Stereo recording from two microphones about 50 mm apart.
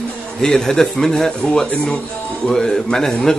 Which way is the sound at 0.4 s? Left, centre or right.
Centre.